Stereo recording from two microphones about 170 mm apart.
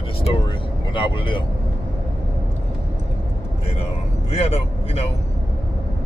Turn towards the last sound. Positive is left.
turn(degrees=35)  # may be behind; listen again after turning